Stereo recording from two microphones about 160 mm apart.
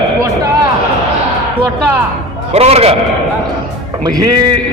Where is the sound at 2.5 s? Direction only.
40° right (ahead or behind).